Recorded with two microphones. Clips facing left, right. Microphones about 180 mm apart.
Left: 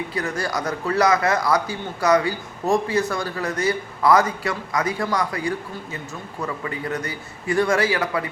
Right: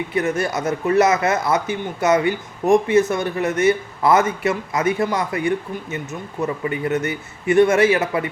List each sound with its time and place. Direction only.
0.1 s speech: 25° right (ahead or behind)